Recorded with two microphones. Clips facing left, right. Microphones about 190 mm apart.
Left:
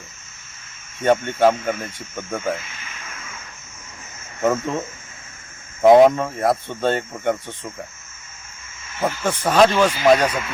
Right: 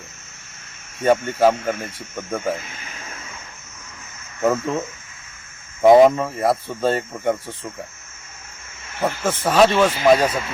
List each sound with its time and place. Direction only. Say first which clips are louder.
1.0 s speech: even; centre (ahead or behind)
2.6 s speech: right 2 dB; 50° right (ahead or behind)
2.8 s a sound: right 2 dB; 35° right (ahead or behind)
4.4 s speech: right 1 dB; centre (ahead or behind)
5.8 s speech: even; centre (ahead or behind)
9.0 s speech: even; centre (ahead or behind)